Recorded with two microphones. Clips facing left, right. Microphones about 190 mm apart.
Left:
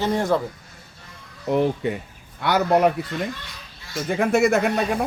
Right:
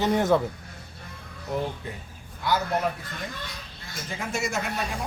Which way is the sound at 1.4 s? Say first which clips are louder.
Left 9 dB; 75° left (ahead or behind).